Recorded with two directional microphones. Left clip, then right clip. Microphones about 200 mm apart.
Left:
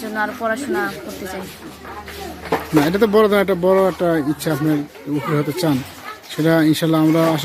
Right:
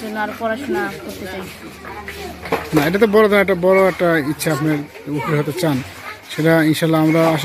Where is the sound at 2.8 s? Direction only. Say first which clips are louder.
Right 2 dB; 10° left (ahead or behind).